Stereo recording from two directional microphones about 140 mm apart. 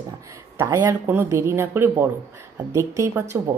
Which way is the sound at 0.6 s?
20° right (ahead or behind).